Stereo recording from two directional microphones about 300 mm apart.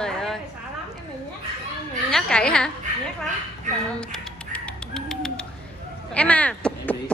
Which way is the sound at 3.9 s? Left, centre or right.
Centre.